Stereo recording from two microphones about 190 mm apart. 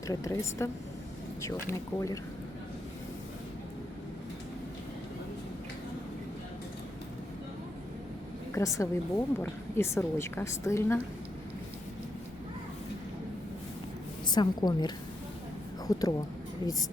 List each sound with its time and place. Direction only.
0.1 s a woman's voice: 15° left (ahead or behind)
8.5 s a woman's voice: 15° left (ahead or behind)
14.3 s a woman's voice: 20° left (ahead or behind)